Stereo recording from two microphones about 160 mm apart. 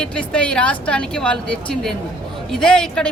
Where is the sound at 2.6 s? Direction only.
5° left (ahead or behind).